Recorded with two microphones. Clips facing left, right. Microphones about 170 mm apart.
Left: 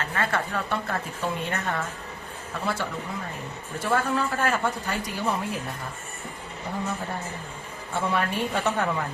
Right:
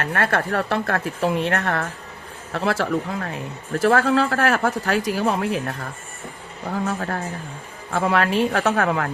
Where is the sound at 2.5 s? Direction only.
85° right.